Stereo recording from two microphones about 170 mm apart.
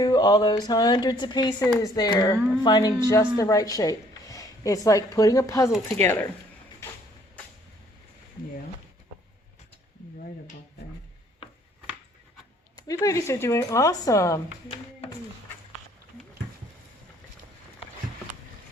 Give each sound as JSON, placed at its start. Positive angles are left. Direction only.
{"t": 0.0, "sound": "speech", "side_deg": 20}
{"t": 6.8, "sound": "music", "side_deg": 15}
{"t": 12.7, "sound": "speech", "side_deg": 20}